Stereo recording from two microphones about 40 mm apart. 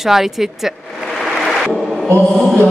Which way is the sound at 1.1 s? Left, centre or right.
Centre.